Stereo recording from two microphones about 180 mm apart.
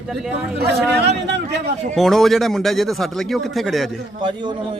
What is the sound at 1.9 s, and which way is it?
A man's voice, centre (ahead or behind).